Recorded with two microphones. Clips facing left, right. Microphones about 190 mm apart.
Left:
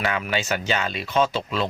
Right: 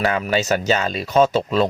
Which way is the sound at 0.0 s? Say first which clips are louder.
Right 5 dB; 40° right (ahead or behind).